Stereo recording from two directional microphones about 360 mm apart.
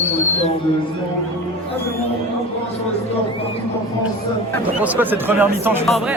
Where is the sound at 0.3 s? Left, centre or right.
Centre.